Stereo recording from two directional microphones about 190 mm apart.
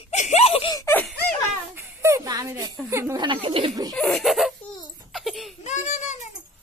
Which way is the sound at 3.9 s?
5° left (ahead or behind).